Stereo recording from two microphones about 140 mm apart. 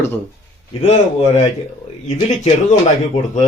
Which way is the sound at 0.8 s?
50° left (ahead or behind).